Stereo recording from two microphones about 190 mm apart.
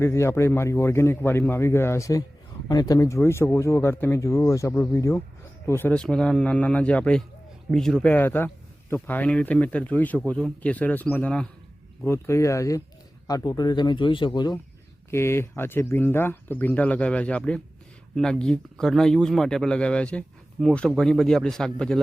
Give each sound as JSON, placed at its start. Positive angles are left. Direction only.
{"t": 0.0, "sound": "speech", "side_deg": 15}